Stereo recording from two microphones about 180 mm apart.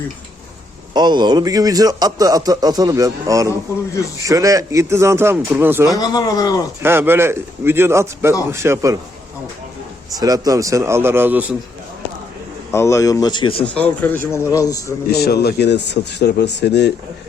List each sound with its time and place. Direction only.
0.9 s a man's voice: 25° right (ahead or behind)
5.9 s speech: 20° left (ahead or behind)
6.8 s a man's voice: 15° right (ahead or behind)
10.2 s a man's voice: 20° right (ahead or behind)
12.7 s speech: 15° left (ahead or behind)
13.7 s speech: 10° left (ahead or behind)
15.1 s speech: 60° left (ahead or behind)